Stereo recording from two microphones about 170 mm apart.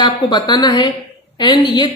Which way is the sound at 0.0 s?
25° left (ahead or behind).